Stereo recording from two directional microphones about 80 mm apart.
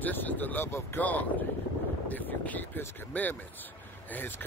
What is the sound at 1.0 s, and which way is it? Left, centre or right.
Speech, centre.